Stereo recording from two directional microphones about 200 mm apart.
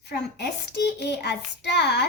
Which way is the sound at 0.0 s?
55° left (ahead or behind).